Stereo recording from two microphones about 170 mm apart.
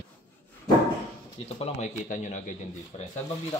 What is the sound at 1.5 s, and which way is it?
Speech, 40° left (ahead or behind).